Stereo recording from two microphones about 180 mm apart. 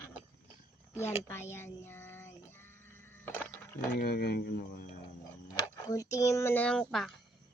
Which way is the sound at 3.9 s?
60° left (ahead or behind).